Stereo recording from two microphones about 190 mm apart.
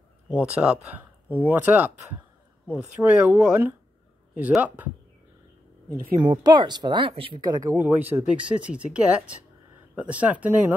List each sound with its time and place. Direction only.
0.3 s speech: 5° right (ahead or behind)
6.1 s speech: 20° right (ahead or behind)
7.7 s speech: 10° right (ahead or behind)